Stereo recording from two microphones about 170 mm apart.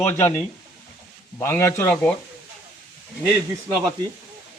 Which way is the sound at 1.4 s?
15° left (ahead or behind).